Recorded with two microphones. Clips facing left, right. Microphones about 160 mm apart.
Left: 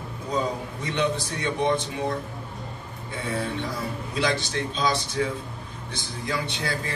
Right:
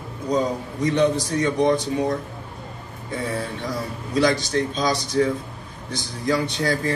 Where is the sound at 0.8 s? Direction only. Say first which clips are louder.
Right 7 dB; 40° right (ahead or behind).